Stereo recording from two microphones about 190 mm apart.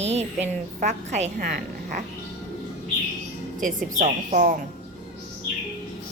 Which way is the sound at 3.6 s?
45° right (ahead or behind).